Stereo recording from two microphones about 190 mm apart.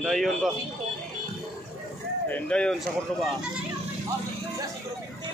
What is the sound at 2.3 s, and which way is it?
Speech, 5° left (ahead or behind).